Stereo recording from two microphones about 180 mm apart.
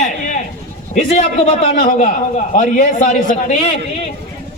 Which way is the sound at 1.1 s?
40° left (ahead or behind).